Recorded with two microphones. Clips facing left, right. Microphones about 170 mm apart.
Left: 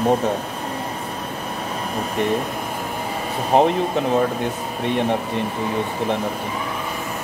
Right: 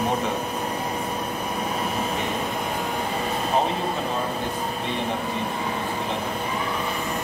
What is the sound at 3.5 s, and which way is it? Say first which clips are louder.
Speech: left 8 dB; 70° left (ahead or behind).